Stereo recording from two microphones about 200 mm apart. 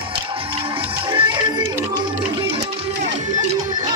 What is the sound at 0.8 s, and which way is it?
Music, 25° right (ahead or behind).